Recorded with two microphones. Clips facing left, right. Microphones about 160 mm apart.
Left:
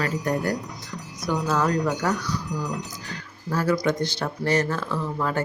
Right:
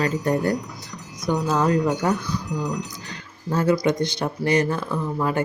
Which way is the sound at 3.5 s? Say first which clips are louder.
Right 3 dB; 20° right (ahead or behind).